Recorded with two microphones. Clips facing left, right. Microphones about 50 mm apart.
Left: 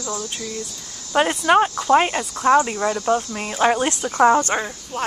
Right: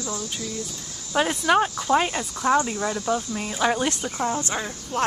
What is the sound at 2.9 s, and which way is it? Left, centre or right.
Cricket, centre.